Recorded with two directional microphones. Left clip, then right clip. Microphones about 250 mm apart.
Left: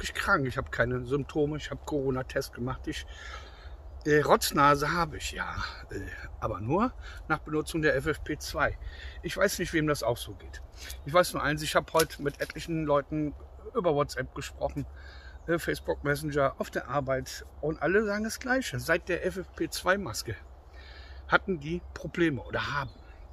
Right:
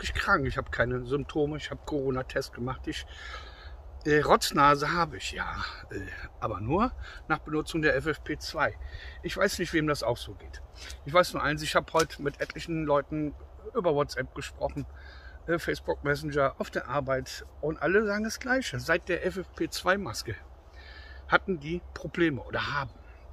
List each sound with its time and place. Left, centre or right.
0.0 s speech: centre